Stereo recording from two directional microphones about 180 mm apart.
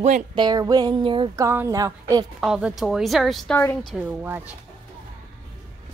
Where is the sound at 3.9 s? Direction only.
10° right (ahead or behind).